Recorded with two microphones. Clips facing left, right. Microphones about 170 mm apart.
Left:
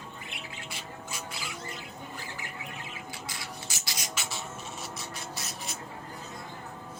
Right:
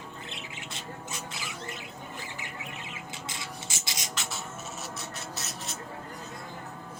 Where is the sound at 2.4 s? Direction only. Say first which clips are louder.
Even; 20° right (ahead or behind).